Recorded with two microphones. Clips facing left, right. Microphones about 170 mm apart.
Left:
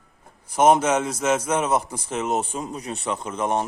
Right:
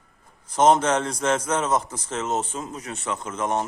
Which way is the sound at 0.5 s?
10° left (ahead or behind).